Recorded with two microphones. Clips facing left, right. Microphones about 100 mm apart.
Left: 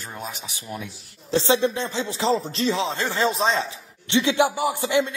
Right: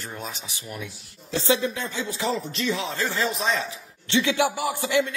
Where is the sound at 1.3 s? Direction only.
30° left (ahead or behind).